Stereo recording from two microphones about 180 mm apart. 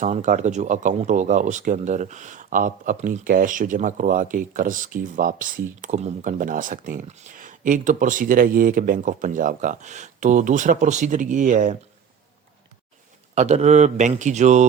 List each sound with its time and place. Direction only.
0.0 s speech: 45° right (ahead or behind)
13.3 s speech: 35° right (ahead or behind)